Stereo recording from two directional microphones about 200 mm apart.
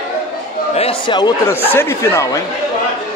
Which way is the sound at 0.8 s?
25° left (ahead or behind).